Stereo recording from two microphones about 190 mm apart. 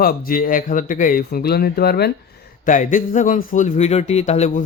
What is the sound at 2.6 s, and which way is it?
Speech, 45° left (ahead or behind).